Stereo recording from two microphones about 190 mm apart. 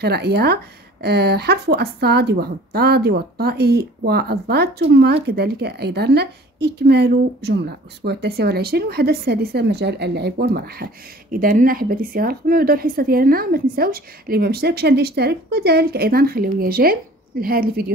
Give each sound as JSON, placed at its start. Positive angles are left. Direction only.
{"t": 0.0, "sound": "a woman's voice", "side_deg": -60}